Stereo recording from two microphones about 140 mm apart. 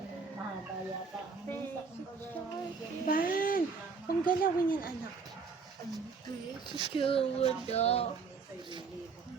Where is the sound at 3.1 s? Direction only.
90° left.